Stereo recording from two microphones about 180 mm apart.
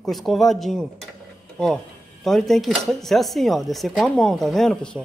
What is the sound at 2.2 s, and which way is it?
Speech, centre (ahead or behind).